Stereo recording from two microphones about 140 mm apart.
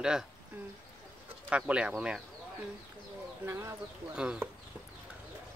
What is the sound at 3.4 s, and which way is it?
Speech, 20° right (ahead or behind).